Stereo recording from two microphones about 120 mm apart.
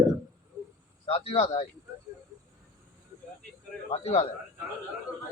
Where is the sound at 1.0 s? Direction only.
55° left (ahead or behind).